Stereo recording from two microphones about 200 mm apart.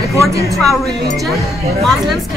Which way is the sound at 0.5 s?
Centre (ahead or behind).